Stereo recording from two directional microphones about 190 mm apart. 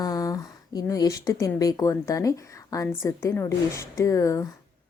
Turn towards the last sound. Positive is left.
turn(degrees=15)  # may be behind; listen again after turning